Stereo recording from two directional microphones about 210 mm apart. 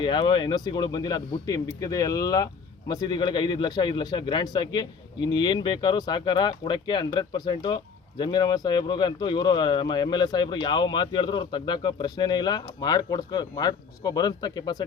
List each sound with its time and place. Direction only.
0.0 s speech: 20° left (ahead or behind)